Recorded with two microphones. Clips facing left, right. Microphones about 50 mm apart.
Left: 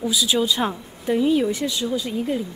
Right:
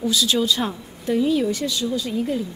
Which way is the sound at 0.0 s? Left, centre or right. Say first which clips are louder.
Even; centre.